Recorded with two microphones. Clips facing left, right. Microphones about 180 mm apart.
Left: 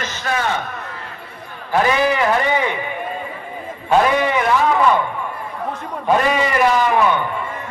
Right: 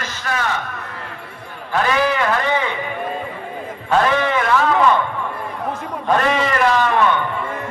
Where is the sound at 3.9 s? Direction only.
10° left (ahead or behind).